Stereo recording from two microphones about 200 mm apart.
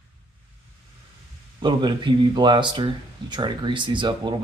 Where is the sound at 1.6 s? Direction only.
25° right (ahead or behind).